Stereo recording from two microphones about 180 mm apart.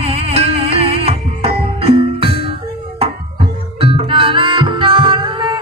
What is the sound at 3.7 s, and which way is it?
Music, 30° right (ahead or behind).